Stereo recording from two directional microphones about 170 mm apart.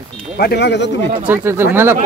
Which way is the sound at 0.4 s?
75° left (ahead or behind).